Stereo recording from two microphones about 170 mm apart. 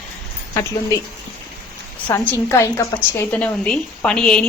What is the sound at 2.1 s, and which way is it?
A woman's voice, 15° left (ahead or behind).